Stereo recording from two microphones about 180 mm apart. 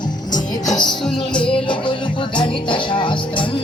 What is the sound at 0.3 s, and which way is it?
Music, 20° left (ahead or behind).